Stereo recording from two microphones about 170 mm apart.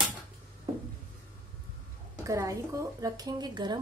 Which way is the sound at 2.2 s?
20° right (ahead or behind).